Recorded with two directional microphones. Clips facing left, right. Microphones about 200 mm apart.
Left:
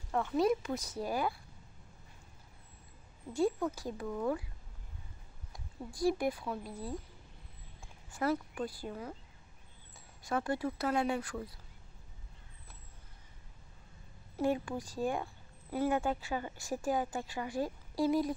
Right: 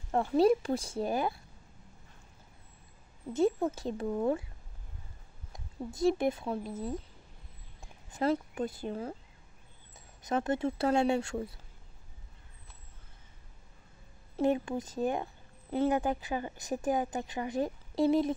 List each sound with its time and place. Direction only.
0.1 s speech: 35° right (ahead or behind)
3.3 s a woman's voice: 25° right (ahead or behind)
5.5 s speech: 20° right (ahead or behind)
10.2 s a woman's voice: 20° right (ahead or behind)
14.3 s a woman's voice: 20° right (ahead or behind)